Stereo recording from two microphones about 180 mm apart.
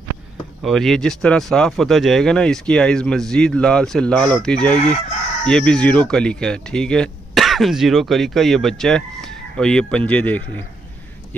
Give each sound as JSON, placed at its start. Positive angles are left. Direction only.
{"t": 0.6, "sound": "speech", "side_deg": 0}